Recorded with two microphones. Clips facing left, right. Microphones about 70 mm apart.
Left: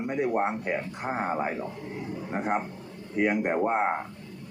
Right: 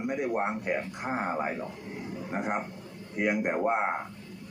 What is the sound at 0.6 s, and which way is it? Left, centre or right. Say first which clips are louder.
Speech: left 1 dB; centre.